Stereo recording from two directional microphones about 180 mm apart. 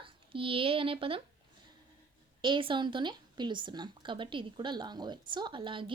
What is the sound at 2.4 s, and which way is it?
Speech, 25° right (ahead or behind).